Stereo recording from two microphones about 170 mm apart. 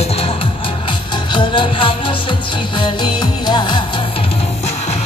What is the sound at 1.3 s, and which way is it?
Music, 30° left (ahead or behind).